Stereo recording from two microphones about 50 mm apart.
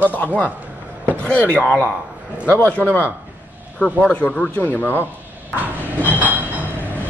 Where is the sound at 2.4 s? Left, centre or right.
Left.